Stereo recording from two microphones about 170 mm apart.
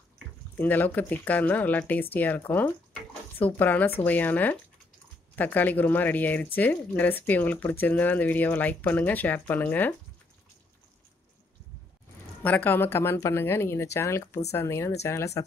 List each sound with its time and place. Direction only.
0.6 s speech: 10° left (ahead or behind)
12.4 s speech: 10° left (ahead or behind)